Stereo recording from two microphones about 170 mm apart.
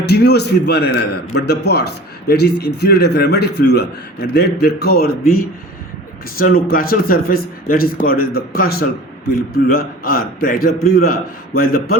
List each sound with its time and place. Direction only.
0.1 s a man's voice: 75° left (ahead or behind)